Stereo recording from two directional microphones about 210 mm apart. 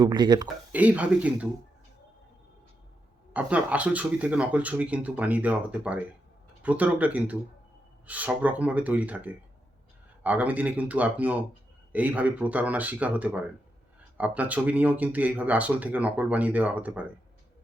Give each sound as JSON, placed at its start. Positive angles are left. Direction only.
{"t": 0.0, "sound": "speech", "side_deg": -20}
{"t": 0.4, "sound": "speech", "side_deg": -5}
{"t": 3.3, "sound": "speech", "side_deg": -5}